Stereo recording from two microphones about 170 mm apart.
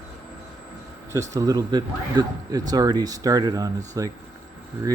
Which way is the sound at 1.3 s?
20° right (ahead or behind).